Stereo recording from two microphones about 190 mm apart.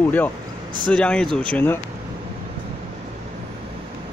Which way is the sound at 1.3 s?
25° right (ahead or behind).